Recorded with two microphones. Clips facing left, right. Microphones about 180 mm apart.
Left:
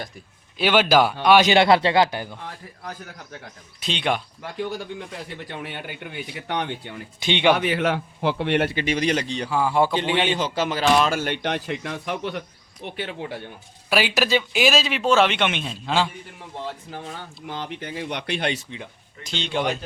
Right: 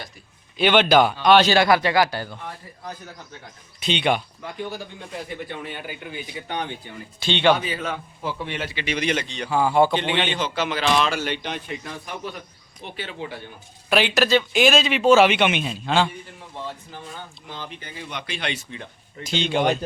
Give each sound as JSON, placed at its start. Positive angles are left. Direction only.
{"t": 0.5, "sound": "speech", "side_deg": 5}
{"t": 1.5, "sound": "speech", "side_deg": 25}
{"t": 3.8, "sound": "speech", "side_deg": 0}
{"t": 5.6, "sound": "a man's voice", "side_deg": 65}
{"t": 7.2, "sound": "speech", "side_deg": 15}
{"t": 7.5, "sound": "a man's voice", "side_deg": 70}
{"t": 8.7, "sound": "speech", "side_deg": 45}
{"t": 9.5, "sound": "speech", "side_deg": 0}
{"t": 10.3, "sound": "speech", "side_deg": 40}
{"t": 12.8, "sound": "speech", "side_deg": 60}
{"t": 13.9, "sound": "speech", "side_deg": 5}
{"t": 17.5, "sound": "speech", "side_deg": 70}
{"t": 19.2, "sound": "speech", "side_deg": -5}